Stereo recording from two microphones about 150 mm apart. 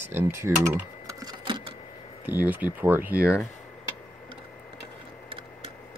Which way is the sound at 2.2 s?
10° right (ahead or behind).